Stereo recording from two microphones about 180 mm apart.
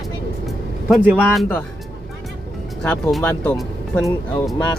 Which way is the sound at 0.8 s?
Centre (ahead or behind).